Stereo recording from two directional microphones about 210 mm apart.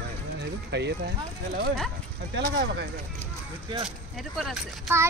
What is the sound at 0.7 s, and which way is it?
Speech, 55° right (ahead or behind).